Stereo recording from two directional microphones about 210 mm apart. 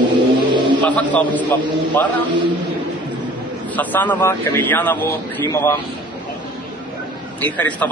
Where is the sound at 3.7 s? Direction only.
10° left (ahead or behind).